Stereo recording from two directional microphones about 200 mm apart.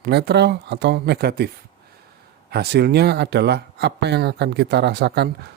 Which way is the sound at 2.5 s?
50° right (ahead or behind).